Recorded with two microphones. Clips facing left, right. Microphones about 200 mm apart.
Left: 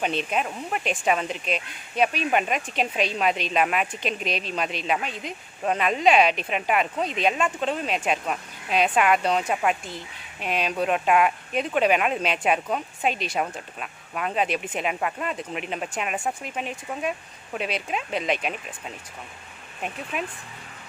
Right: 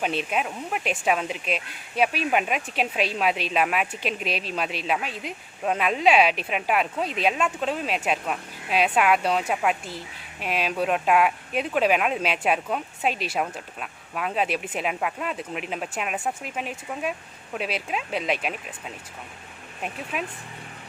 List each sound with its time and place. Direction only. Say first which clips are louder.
0.0 s speech: even; 5° right (ahead or behind)
20.1 s speech: even; centre (ahead or behind)